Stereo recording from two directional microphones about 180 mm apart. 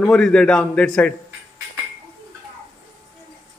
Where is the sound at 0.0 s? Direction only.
5° left (ahead or behind).